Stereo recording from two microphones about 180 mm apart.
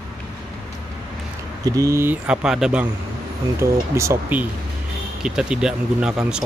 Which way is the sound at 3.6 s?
15° right (ahead or behind).